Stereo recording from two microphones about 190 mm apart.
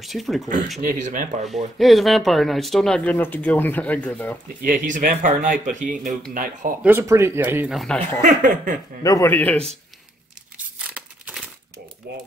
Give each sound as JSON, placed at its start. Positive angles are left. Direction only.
{"t": 0.0, "sound": "speech", "side_deg": 0}
{"t": 0.7, "sound": "speech", "side_deg": -40}
{"t": 1.8, "sound": "speech", "side_deg": 0}
{"t": 4.6, "sound": "speech", "side_deg": -45}
{"t": 6.8, "sound": "speech", "side_deg": -10}
{"t": 8.2, "sound": "speech", "side_deg": -45}
{"t": 9.0, "sound": "speech", "side_deg": 15}
{"t": 10.8, "sound": "tearing", "side_deg": -5}